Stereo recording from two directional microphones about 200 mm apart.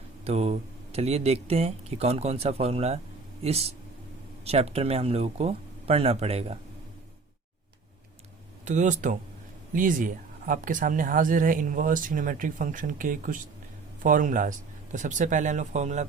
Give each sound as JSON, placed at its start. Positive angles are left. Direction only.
{"t": 0.3, "sound": "speech", "side_deg": -30}
{"t": 8.6, "sound": "speech", "side_deg": -35}